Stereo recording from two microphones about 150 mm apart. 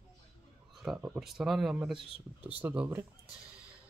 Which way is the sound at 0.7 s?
5° right (ahead or behind).